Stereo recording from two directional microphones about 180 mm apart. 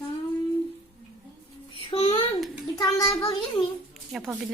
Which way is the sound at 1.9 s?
35° left (ahead or behind).